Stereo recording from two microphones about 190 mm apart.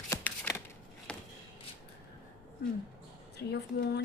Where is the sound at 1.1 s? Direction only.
5° left (ahead or behind).